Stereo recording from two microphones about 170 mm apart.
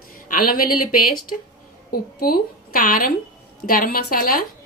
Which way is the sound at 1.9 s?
60° left (ahead or behind).